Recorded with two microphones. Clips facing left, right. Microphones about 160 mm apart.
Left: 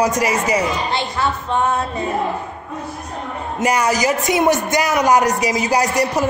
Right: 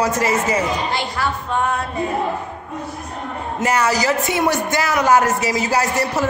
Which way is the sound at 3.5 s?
15° left (ahead or behind).